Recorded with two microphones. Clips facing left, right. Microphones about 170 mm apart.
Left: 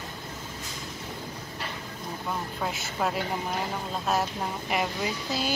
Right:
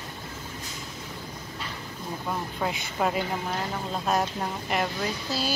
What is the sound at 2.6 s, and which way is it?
Speech, centre (ahead or behind).